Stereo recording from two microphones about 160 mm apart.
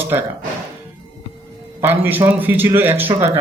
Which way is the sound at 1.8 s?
15° right (ahead or behind).